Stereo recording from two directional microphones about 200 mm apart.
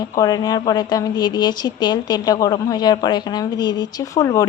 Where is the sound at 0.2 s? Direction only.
20° left (ahead or behind).